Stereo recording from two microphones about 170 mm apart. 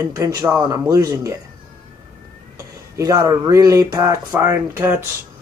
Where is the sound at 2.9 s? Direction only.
20° right (ahead or behind).